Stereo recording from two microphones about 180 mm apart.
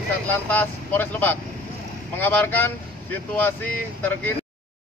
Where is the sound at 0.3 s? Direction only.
10° left (ahead or behind).